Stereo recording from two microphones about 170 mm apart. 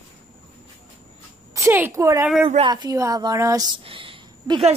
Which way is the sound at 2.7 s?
20° right (ahead or behind).